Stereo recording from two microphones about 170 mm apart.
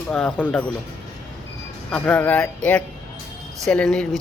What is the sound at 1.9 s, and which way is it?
A man's voice, 10° left (ahead or behind).